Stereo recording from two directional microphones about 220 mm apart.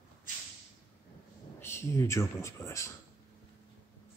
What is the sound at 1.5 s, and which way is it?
A man's voice, 10° left (ahead or behind).